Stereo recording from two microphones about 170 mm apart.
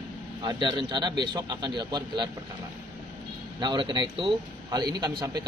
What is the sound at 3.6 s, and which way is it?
A man's voice, 25° right (ahead or behind).